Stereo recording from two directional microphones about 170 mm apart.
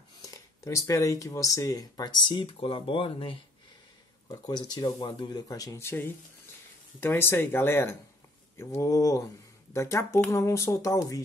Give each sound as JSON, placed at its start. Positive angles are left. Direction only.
{"t": 0.2, "sound": "speech", "side_deg": 20}